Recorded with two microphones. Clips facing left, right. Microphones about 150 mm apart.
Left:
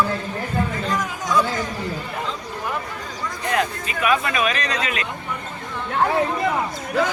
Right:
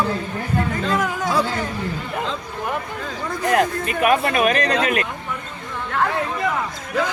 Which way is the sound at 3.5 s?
55° right (ahead or behind).